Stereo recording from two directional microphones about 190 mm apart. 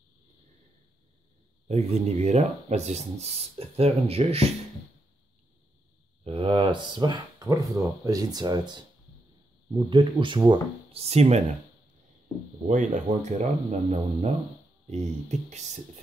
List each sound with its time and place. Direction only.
1.7 s speech: 35° right (ahead or behind)
6.2 s speech: 30° right (ahead or behind)
12.6 s speech: 40° right (ahead or behind)